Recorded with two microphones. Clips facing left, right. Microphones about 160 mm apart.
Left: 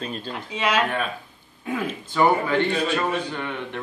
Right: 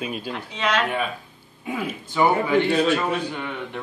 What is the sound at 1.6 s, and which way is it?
Speech, 10° right (ahead or behind).